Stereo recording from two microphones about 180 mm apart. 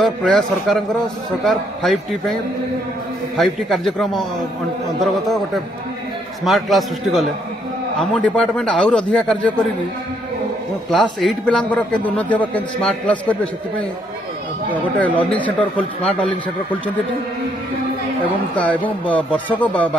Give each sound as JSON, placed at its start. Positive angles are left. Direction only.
{"t": 0.0, "sound": "a man's voice", "side_deg": 5}
{"t": 3.3, "sound": "a man's voice", "side_deg": 0}
{"t": 6.4, "sound": "a man's voice", "side_deg": 0}
{"t": 10.9, "sound": "a man's voice", "side_deg": 0}
{"t": 14.7, "sound": "a man's voice", "side_deg": 10}
{"t": 18.6, "sound": "a man's voice", "side_deg": 10}